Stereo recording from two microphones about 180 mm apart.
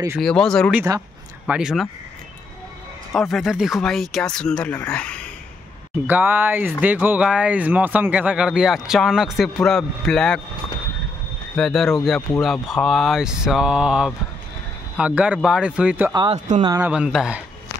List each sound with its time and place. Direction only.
0.2 s speech: 5° left (ahead or behind)
3.1 s speech: centre (ahead or behind)
6.0 s speech: 10° right (ahead or behind)
11.5 s speech: centre (ahead or behind)
16.1 s speech: 25° right (ahead or behind)
16.8 s speech: 5° right (ahead or behind)